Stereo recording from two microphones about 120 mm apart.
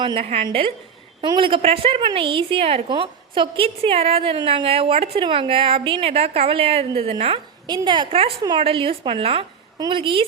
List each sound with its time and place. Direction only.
0.0 s a woman's voice: 45° right (ahead or behind)
9.7 s a woman's voice: 40° right (ahead or behind)